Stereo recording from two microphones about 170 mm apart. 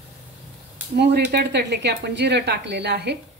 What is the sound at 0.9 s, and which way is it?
A woman's voice, 85° right.